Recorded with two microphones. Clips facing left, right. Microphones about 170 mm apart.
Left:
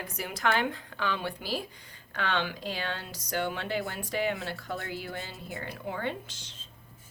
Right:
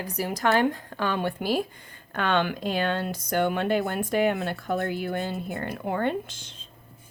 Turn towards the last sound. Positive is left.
turn(degrees=-55)  # may be behind; listen again after turning